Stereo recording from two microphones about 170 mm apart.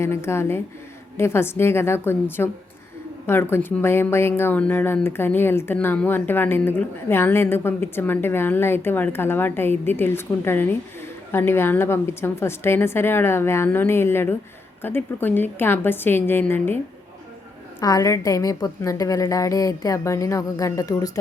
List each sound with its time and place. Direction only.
0.0 s a woman's voice: 15° left (ahead or behind)
17.7 s a woman's voice: 20° left (ahead or behind)